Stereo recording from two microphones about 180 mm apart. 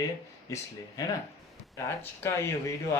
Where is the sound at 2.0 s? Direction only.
15° left (ahead or behind).